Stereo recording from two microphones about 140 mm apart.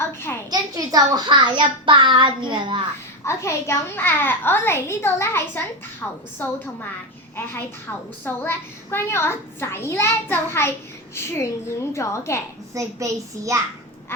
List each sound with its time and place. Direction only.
0.0 s a child's voice: 15° left (ahead or behind)
0.5 s a child's voice: 25° right (ahead or behind)
3.2 s a child's voice: 20° left (ahead or behind)
8.2 s a child's voice: 15° left (ahead or behind)
12.7 s a child's voice: 25° right (ahead or behind)